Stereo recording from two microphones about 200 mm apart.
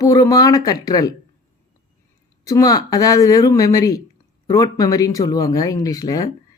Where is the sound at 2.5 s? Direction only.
15° left (ahead or behind).